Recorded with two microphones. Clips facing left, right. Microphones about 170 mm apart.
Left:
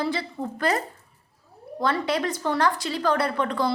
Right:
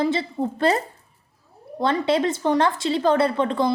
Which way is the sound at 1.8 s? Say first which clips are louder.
Right 4 dB; 25° right (ahead or behind).